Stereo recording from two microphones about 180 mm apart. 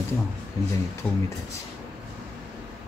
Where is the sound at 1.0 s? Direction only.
5° left (ahead or behind).